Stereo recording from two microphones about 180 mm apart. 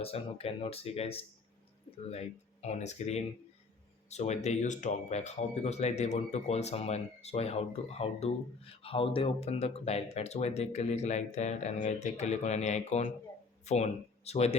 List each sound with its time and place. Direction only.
0.0 s speech: 35° left (ahead or behind)